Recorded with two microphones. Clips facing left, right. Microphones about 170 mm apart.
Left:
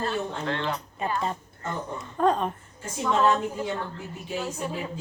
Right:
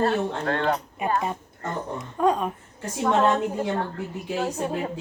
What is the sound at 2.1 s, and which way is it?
Speech, 10° right (ahead or behind).